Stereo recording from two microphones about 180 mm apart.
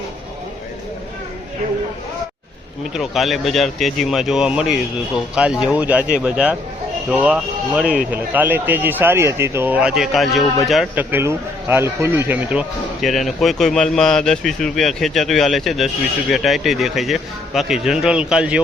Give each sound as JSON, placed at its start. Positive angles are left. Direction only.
{"t": 2.9, "sound": "a man's voice", "side_deg": 0}
{"t": 11.1, "sound": "a man's voice", "side_deg": -15}